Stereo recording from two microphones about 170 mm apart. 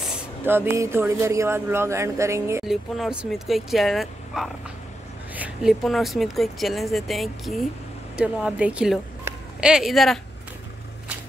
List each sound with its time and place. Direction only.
0.5 s speech: 15° right (ahead or behind)
2.6 s speech: centre (ahead or behind)